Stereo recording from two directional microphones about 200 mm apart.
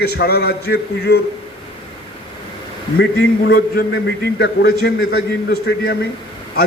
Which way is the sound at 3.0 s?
50° left (ahead or behind).